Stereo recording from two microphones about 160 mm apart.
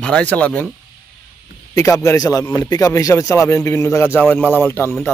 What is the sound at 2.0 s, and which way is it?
Speech, 20° left (ahead or behind).